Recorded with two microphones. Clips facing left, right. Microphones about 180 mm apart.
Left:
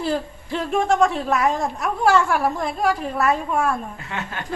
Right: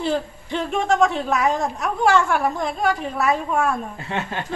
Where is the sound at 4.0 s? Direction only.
30° right (ahead or behind).